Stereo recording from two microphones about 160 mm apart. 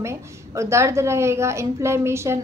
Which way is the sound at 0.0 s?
15° right (ahead or behind).